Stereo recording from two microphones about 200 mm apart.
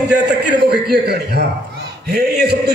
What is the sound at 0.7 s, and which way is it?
A man's voice, 55° right (ahead or behind).